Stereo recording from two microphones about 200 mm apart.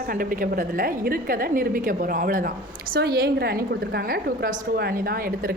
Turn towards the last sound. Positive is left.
turn(degrees=-45)  # may be behind; listen again after turning